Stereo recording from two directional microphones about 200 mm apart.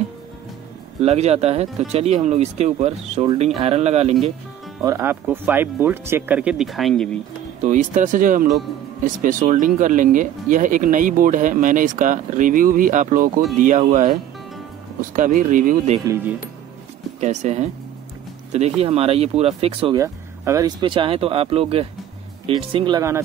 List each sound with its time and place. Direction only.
1.0 s speech: 30° right (ahead or behind)
4.8 s speech: 10° right (ahead or behind)
7.6 s speech: 40° right (ahead or behind)
15.1 s speech: 40° right (ahead or behind)
17.2 s speech: 35° right (ahead or behind); by 23.2 s 15° right (ahead or behind)